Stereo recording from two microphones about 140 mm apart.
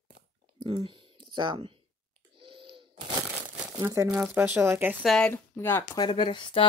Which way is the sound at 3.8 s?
20° right (ahead or behind).